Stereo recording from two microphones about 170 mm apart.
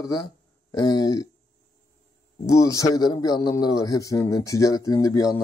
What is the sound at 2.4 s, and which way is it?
A man's voice, 20° left (ahead or behind).